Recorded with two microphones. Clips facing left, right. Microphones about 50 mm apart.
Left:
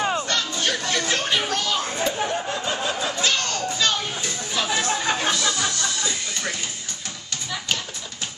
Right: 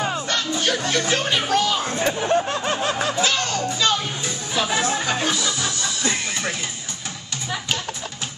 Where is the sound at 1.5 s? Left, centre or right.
Centre.